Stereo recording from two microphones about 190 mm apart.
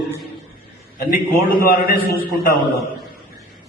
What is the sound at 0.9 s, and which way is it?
A man's voice, 50° left (ahead or behind).